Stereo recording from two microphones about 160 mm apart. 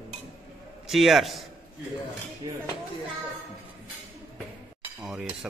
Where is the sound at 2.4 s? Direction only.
25° right (ahead or behind).